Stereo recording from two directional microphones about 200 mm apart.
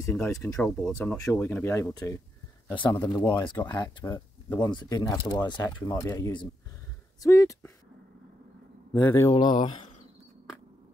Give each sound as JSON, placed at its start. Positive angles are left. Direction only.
{"t": 0.0, "sound": "speech", "side_deg": 10}
{"t": 3.3, "sound": "speech", "side_deg": 20}
{"t": 8.9, "sound": "speech", "side_deg": 10}